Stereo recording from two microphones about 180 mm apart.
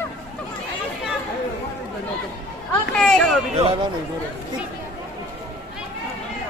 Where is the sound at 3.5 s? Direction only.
35° right (ahead or behind).